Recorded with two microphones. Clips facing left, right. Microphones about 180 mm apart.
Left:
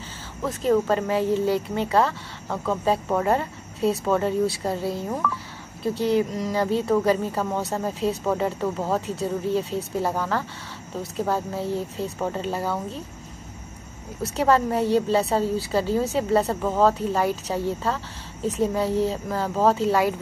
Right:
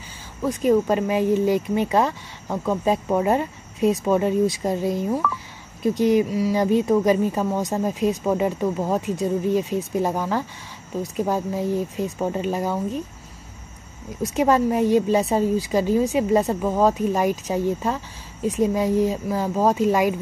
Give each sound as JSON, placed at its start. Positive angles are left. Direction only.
{"t": 0.4, "sound": "a woman's voice", "side_deg": -15}
{"t": 14.2, "sound": "a woman's voice", "side_deg": -15}